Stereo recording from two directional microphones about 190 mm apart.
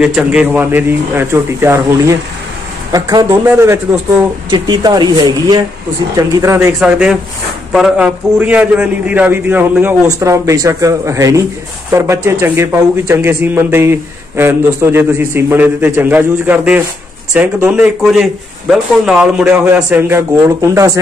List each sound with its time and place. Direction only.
0.0 s speech: 5° right (ahead or behind)
6.8 s speech: 5° right (ahead or behind)